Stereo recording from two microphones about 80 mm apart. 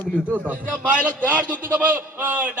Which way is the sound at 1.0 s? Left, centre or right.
Centre.